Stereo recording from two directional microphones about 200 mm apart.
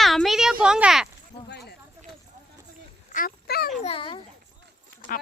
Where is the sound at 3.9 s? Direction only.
25° left (ahead or behind).